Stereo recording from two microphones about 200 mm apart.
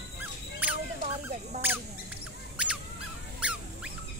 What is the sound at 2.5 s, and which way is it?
Squeak, 5° right (ahead or behind).